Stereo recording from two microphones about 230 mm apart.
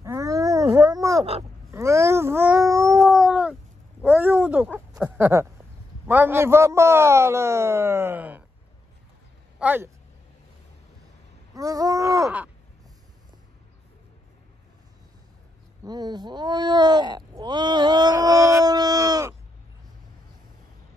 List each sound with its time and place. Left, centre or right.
0.0 s a sound: centre
3.1 s cat: centre
4.0 s a sound: centre
6.0 s speech: centre
9.6 s speech: centre
11.5 s speech: centre
15.8 s speech: centre